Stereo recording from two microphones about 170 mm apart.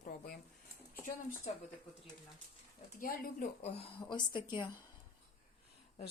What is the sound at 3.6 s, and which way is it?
Speech, 35° left (ahead or behind).